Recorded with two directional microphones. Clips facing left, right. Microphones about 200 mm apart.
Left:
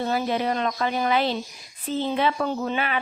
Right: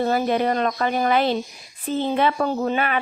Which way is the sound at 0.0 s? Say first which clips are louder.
Right 4 dB; 50° right (ahead or behind).